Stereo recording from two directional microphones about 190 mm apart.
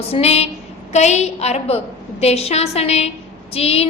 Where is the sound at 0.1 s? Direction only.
35° left (ahead or behind).